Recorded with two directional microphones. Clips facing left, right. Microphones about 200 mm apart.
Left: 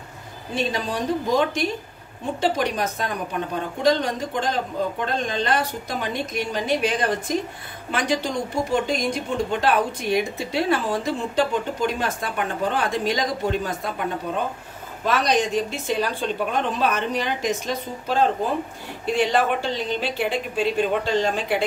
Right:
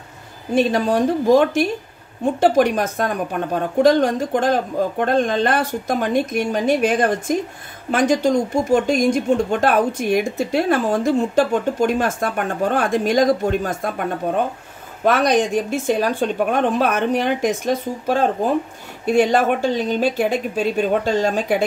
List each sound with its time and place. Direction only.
0.6 s speech: 50° right (ahead or behind)